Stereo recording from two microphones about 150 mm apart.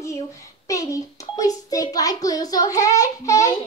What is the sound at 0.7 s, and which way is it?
A child's voice, 20° left (ahead or behind).